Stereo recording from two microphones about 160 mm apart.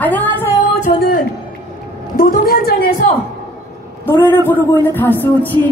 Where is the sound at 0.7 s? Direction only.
60° left (ahead or behind).